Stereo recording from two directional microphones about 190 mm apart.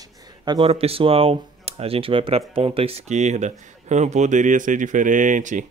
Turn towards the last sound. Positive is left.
turn(degrees=-40)  # may be behind; listen again after turning